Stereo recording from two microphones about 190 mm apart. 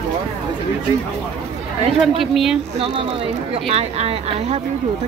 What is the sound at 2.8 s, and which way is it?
Speech, 30° right (ahead or behind).